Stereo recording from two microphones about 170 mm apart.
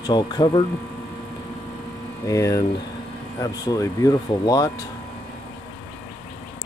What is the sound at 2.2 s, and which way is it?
Speech, 20° left (ahead or behind).